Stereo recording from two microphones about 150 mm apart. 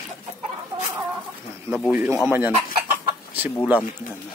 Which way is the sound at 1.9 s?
15° right (ahead or behind).